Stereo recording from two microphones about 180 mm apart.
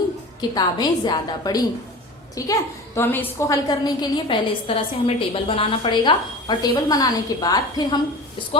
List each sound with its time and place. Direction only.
0.5 s a woman's voice: 20° left (ahead or behind)